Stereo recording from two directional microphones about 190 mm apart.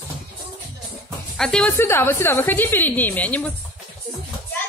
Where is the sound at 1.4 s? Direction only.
5° left (ahead or behind).